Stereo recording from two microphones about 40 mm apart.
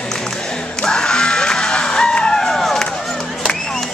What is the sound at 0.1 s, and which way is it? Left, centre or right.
Music, centre.